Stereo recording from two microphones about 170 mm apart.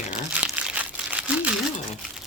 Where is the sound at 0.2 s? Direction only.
5° right (ahead or behind).